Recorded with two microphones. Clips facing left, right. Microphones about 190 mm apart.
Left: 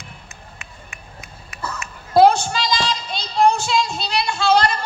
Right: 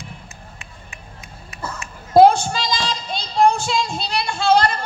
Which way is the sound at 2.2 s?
50° right (ahead or behind).